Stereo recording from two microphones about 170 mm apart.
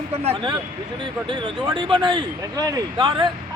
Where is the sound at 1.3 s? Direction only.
25° right (ahead or behind).